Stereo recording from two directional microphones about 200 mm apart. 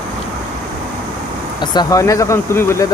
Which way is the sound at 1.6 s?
20° left (ahead or behind).